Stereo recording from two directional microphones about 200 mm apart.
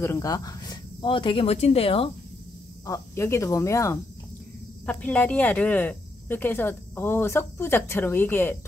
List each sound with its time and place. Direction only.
0.0 s speech: 15° left (ahead or behind)
2.9 s speech: 15° left (ahead or behind)